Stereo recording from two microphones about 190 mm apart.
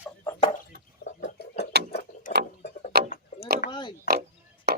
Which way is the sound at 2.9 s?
55° right (ahead or behind).